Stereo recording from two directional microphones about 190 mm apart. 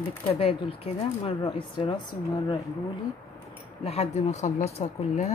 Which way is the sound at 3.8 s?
30° left (ahead or behind).